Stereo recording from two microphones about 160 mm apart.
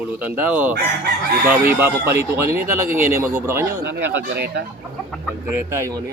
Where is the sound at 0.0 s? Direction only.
10° right (ahead or behind).